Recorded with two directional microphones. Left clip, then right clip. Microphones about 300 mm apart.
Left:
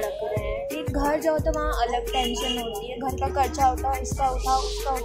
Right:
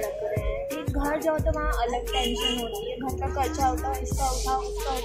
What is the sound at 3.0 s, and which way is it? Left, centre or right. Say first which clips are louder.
Music: left 6 dB; centre.